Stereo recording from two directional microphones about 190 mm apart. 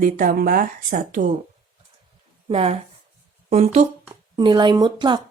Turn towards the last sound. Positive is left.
turn(degrees=-25)  # may be behind; listen again after turning